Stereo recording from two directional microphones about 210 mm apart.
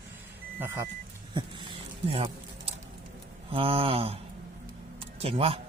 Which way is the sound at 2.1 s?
25° right (ahead or behind).